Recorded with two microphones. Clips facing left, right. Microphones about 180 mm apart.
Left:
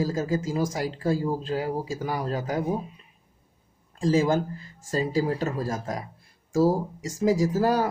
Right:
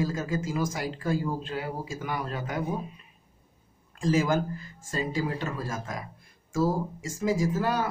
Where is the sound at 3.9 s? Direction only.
30° left (ahead or behind).